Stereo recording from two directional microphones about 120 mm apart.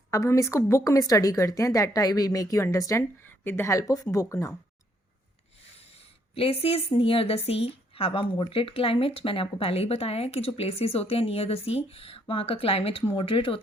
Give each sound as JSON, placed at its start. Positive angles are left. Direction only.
{"t": 0.1, "sound": "a woman's voice", "side_deg": 25}
{"t": 6.3, "sound": "speech", "side_deg": 55}